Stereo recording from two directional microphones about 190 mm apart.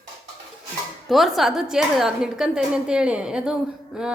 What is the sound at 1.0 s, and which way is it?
A woman's voice, centre (ahead or behind).